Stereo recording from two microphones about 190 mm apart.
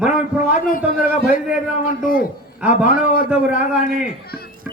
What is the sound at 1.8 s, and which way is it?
Speech, 50° left (ahead or behind).